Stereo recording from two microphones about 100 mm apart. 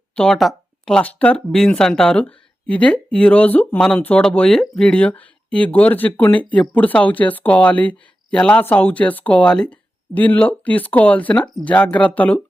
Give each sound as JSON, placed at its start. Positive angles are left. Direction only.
{"t": 0.2, "sound": "speech", "side_deg": 5}
{"t": 3.8, "sound": "speech", "side_deg": 5}
{"t": 4.8, "sound": "speech", "side_deg": 15}